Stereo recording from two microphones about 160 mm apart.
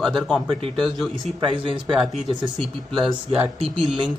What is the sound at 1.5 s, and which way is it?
Speech, 30° right (ahead or behind).